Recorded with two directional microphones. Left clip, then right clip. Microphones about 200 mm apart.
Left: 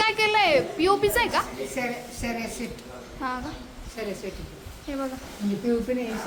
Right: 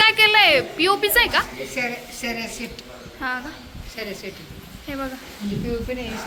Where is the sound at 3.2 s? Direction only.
10° left (ahead or behind).